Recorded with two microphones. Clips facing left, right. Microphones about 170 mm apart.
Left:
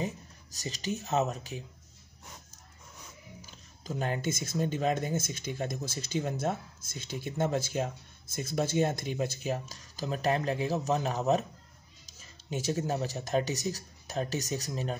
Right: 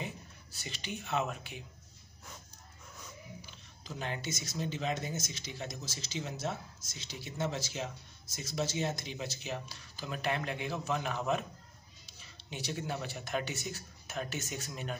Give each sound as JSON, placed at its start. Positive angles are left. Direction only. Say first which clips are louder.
{"t": 0.0, "sound": "speech", "louder": "left 7 dB", "side_deg": 40}
{"t": 3.4, "sound": "speech", "louder": "left 7 dB", "side_deg": 45}